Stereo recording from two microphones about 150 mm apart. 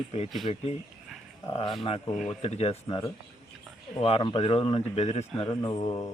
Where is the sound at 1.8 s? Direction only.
40° left (ahead or behind).